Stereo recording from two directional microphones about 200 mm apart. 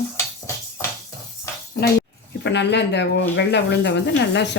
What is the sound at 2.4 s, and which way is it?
Speech, 60° left (ahead or behind).